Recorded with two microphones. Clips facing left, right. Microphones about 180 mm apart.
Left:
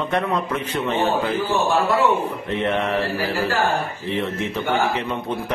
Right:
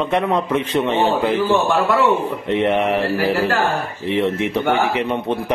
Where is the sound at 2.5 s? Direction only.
20° right (ahead or behind).